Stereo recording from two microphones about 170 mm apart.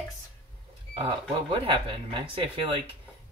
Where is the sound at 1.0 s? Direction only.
30° right (ahead or behind).